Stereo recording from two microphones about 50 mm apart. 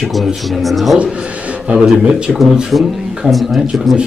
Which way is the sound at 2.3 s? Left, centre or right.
Centre.